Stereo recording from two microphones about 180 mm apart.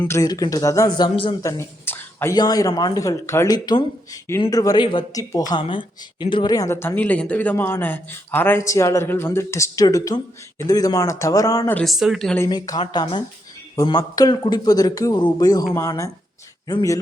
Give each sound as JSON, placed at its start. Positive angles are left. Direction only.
{"t": 0.0, "sound": "speech", "side_deg": 15}
{"t": 1.4, "sound": "speech", "side_deg": 15}
{"t": 11.8, "sound": "speech", "side_deg": 0}
{"t": 12.4, "sound": "speech", "side_deg": 20}